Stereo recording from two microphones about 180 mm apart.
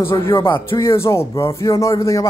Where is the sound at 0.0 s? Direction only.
15° left (ahead or behind).